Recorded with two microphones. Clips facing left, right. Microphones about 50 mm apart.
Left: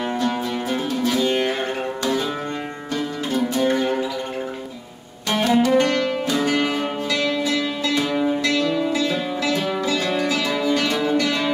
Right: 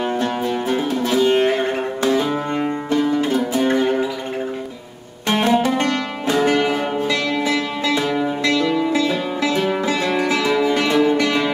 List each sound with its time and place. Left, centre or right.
0.2 s music: right
2.9 s music: right
5.3 s music: right